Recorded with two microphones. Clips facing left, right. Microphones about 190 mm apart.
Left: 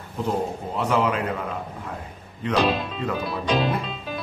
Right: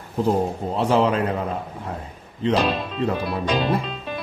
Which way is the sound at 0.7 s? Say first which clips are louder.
Right 3 dB; 30° right (ahead or behind).